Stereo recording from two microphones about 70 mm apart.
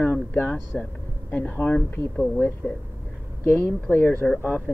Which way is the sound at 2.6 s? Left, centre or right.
Left.